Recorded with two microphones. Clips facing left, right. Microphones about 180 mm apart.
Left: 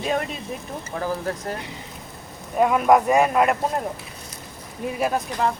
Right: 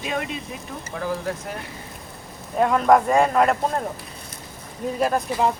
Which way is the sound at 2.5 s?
5° left (ahead or behind).